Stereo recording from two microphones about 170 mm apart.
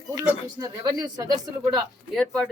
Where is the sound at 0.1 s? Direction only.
20° right (ahead or behind).